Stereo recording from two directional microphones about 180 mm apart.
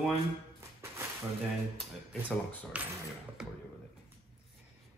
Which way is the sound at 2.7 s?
5° right (ahead or behind).